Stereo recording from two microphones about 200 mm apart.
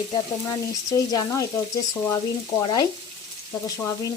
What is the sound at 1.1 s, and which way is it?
Stir, 15° left (ahead or behind).